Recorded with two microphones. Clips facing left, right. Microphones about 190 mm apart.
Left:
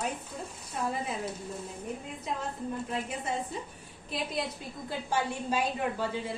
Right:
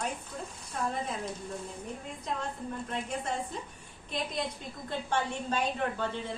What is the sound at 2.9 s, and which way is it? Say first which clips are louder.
Speech: right 2 dB; 5° left (ahead or behind).